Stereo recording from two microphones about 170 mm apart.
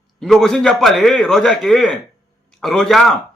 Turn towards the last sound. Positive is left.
turn(degrees=0)  # may be behind; listen again after turning